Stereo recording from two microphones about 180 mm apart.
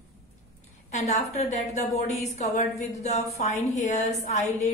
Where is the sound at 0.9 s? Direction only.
40° left (ahead or behind).